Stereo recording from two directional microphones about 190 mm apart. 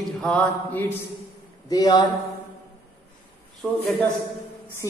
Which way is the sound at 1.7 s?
20° left (ahead or behind).